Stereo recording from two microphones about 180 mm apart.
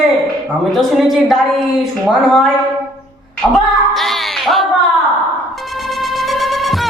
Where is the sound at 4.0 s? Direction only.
Centre (ahead or behind).